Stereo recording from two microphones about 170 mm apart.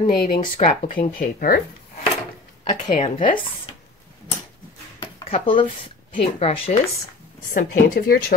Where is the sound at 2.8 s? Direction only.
45° left (ahead or behind).